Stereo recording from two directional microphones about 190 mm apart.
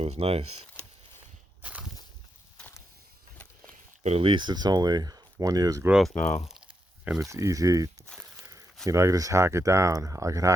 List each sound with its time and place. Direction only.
0.0 s speech: 35° right (ahead or behind)
1.6 s a sound: 5° right (ahead or behind)
4.0 s speech: 30° right (ahead or behind)
5.9 s speech: centre (ahead or behind)
7.3 s speech: 15° right (ahead or behind)